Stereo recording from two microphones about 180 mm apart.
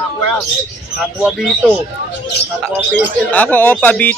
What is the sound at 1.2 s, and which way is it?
Speech, 5° right (ahead or behind).